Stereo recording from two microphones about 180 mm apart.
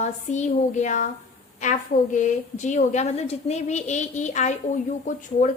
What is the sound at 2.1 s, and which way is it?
A woman's voice, 40° left (ahead or behind).